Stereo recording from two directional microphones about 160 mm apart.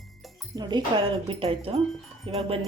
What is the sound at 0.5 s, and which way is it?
Speech, 25° right (ahead or behind).